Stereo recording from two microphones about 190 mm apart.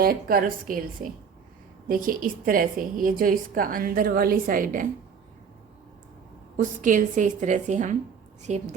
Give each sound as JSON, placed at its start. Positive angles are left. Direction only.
{"t": 0.0, "sound": "a woman's voice", "side_deg": -50}
{"t": 1.9, "sound": "a woman's voice", "side_deg": -45}
{"t": 6.6, "sound": "a woman's voice", "side_deg": -45}